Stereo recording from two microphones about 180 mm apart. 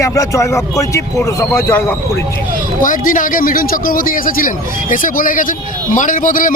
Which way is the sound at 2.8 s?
50° left (ahead or behind).